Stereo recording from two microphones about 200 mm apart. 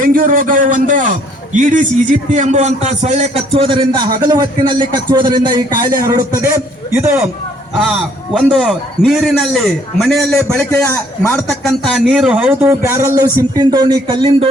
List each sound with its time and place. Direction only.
0.0 s a man's voice: 45° right (ahead or behind); by 5.8 s 20° right (ahead or behind)
6.4 s a man's voice: 10° right (ahead or behind); by 14.5 s 30° right (ahead or behind)